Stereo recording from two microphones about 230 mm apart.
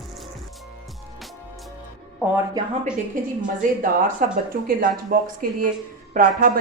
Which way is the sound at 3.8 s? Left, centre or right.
Right.